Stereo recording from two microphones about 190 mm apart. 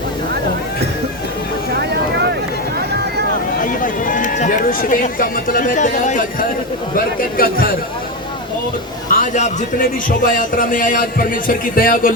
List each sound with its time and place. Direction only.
3.6 s a man's voice: 45° left (ahead or behind)
9.0 s a man's voice: 45° left (ahead or behind)